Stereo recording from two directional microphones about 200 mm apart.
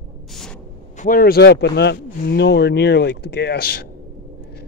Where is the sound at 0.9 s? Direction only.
40° left (ahead or behind).